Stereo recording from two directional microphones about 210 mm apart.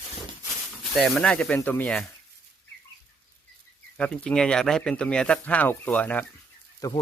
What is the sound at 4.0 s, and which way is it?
Speech, 5° left (ahead or behind).